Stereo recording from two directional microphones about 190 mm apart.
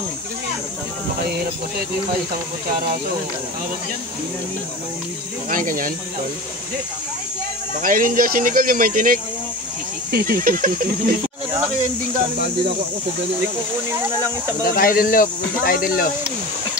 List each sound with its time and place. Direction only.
5.5 s speech: 45° right (ahead or behind)
7.8 s speech: 45° right (ahead or behind)
14.6 s speech: 50° left (ahead or behind)